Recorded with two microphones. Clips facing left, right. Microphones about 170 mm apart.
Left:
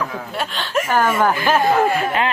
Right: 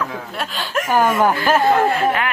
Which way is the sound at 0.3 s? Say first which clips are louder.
Left 2 dB; centre (ahead or behind).